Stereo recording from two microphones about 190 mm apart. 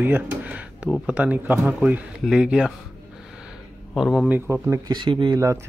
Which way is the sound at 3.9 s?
Centre (ahead or behind).